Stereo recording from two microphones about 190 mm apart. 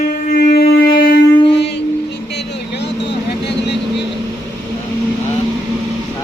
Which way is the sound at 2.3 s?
65° left (ahead or behind).